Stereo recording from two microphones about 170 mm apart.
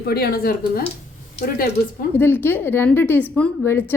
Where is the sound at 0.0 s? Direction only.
65° left (ahead or behind).